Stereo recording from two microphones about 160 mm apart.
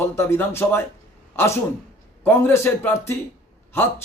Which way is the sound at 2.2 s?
15° left (ahead or behind).